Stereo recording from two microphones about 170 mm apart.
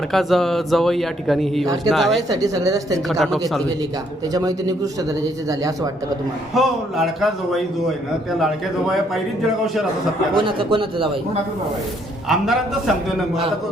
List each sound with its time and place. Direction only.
0.1 s a man's voice: centre (ahead or behind)
1.6 s a woman's voice: 20° right (ahead or behind)
1.9 s a man's voice: centre (ahead or behind)
2.3 s a woman's voice: 20° right (ahead or behind)
3.1 s a man's voice: centre (ahead or behind)
4.3 s a woman's voice: 20° right (ahead or behind)
6.5 s a man's voice: centre (ahead or behind)
10.3 s speech: 30° right (ahead or behind)
12.3 s a man's voice: centre (ahead or behind)